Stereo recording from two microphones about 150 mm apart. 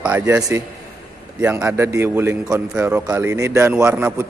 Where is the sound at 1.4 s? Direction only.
15° right (ahead or behind).